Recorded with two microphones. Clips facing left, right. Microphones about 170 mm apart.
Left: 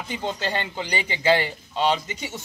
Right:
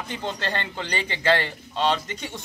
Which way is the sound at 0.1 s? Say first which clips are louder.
Left 2 dB; 10° left (ahead or behind).